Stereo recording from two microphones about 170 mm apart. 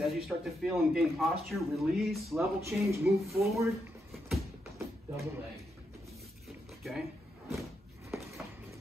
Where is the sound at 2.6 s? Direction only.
15° right (ahead or behind).